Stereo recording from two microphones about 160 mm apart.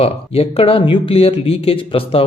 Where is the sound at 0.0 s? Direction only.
35° left (ahead or behind).